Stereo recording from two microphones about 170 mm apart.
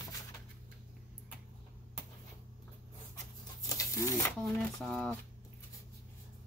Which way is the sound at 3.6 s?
20° left (ahead or behind).